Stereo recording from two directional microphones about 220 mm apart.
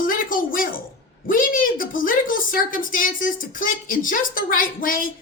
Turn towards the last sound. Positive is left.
turn(degrees=40)  # may be behind; listen again after turning